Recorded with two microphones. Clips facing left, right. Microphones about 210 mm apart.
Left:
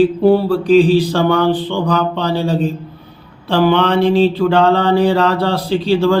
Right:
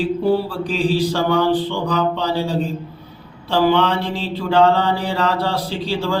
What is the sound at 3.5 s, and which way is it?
Mantra, 60° left (ahead or behind).